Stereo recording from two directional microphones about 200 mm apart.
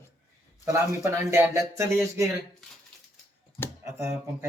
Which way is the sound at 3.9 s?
15° right (ahead or behind).